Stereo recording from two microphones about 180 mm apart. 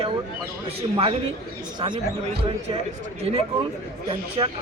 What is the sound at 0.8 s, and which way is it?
Speech, 30° right (ahead or behind).